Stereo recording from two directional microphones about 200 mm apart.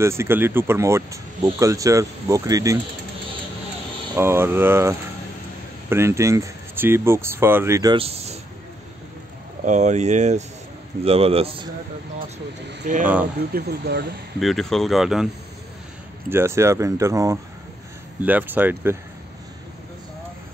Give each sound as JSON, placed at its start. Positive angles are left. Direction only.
{"t": 0.0, "sound": "speech", "side_deg": -15}
{"t": 4.1, "sound": "speech", "side_deg": -10}
{"t": 9.7, "sound": "a man's voice", "side_deg": -35}
{"t": 12.8, "sound": "speech", "side_deg": -40}
{"t": 13.5, "sound": "speech", "side_deg": -50}
{"t": 14.4, "sound": "speech", "side_deg": 0}
{"t": 16.3, "sound": "speech", "side_deg": -10}